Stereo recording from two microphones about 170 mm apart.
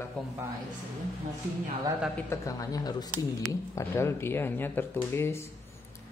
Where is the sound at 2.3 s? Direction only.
20° left (ahead or behind).